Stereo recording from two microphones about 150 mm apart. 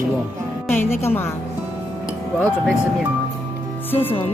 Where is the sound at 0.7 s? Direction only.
15° left (ahead or behind).